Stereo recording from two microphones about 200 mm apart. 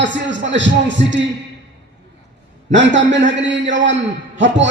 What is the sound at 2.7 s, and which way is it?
A man's voice, 65° right (ahead or behind).